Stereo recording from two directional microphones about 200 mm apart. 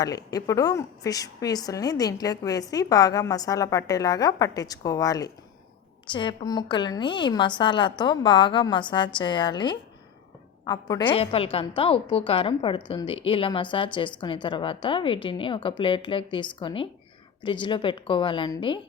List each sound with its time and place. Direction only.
0.0 s a woman's voice: 20° left (ahead or behind)